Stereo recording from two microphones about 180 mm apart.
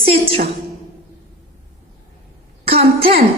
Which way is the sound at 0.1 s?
35° right (ahead or behind).